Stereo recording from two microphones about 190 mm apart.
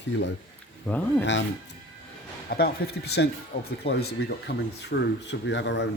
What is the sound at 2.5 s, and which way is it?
Speech, 55° left (ahead or behind).